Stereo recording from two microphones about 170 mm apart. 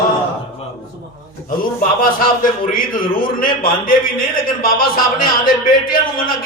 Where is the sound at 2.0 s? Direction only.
55° left (ahead or behind).